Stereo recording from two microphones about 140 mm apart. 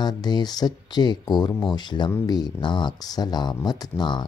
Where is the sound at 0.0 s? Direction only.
30° left (ahead or behind).